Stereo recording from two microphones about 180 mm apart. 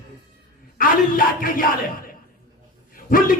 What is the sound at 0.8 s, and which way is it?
A man's voice, 50° left (ahead or behind).